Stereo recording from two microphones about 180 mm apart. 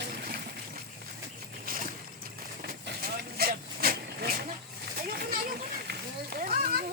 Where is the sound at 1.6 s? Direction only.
50° right (ahead or behind).